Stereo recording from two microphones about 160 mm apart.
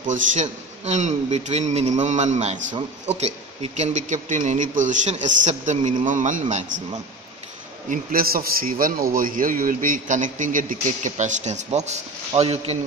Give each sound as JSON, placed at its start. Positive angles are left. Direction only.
{"t": 0.0, "sound": "a man's voice", "side_deg": -50}
{"t": 6.4, "sound": "speech", "side_deg": -40}
{"t": 7.9, "sound": "a man's voice", "side_deg": -65}